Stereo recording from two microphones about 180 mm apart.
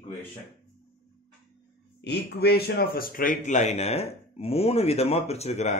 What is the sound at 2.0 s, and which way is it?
Speech, 65° left (ahead or behind).